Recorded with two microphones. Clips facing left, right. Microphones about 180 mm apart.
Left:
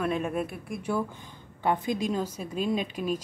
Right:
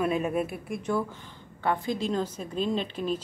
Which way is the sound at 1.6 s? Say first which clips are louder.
Left 1 dB; 20° left (ahead or behind).